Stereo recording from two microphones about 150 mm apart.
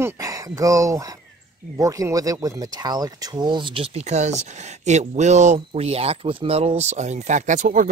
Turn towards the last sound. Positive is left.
turn(degrees=-60)  # may be behind; listen again after turning